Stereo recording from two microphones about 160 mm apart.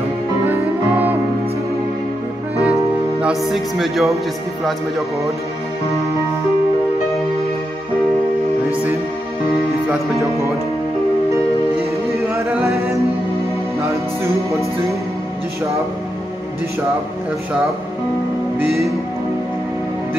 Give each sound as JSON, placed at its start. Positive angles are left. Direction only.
{"t": 0.5, "sound": "music", "side_deg": -10}
{"t": 2.6, "sound": "music", "side_deg": -5}
{"t": 12.2, "sound": "singing", "side_deg": -20}
{"t": 12.6, "sound": "music", "side_deg": -20}